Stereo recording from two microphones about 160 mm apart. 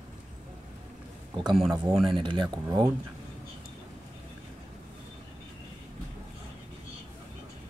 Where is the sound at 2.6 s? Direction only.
20° right (ahead or behind).